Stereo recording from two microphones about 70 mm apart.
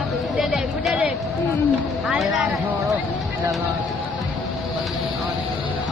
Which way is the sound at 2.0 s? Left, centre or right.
Centre.